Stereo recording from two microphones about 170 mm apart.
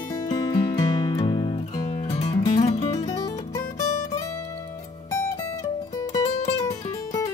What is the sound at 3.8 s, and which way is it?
Music, 45° left (ahead or behind).